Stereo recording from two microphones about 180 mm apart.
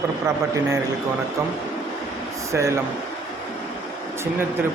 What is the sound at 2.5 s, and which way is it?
Speech, 15° right (ahead or behind).